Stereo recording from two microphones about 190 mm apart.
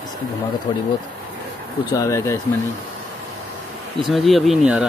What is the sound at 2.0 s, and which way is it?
Speech, 15° left (ahead or behind).